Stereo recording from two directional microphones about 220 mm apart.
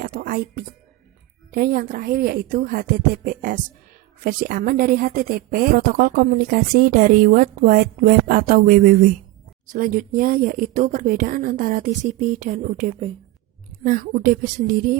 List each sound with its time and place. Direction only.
0.0 s a woman's voice: 40° right (ahead or behind)